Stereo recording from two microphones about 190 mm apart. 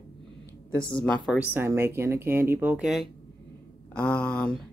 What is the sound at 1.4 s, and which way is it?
Speech, 10° right (ahead or behind).